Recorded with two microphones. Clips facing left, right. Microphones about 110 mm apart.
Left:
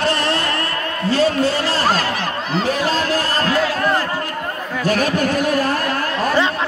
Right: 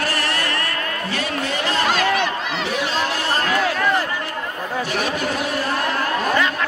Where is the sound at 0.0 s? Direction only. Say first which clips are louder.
Left 4 dB; 25° left (ahead or behind).